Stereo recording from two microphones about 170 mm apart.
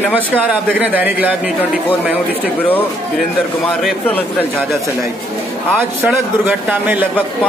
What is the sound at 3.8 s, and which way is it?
Speech, centre (ahead or behind).